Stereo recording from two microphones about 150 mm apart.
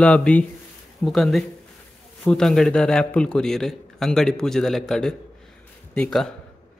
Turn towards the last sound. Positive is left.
turn(degrees=5)  # may be behind; listen again after turning